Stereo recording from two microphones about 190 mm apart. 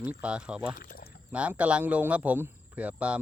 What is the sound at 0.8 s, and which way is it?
Pour, 50° left (ahead or behind).